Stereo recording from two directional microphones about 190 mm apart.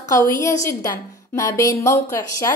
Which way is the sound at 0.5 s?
15° left (ahead or behind).